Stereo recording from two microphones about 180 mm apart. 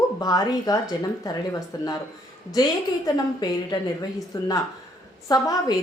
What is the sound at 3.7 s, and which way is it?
A woman's voice, 20° left (ahead or behind).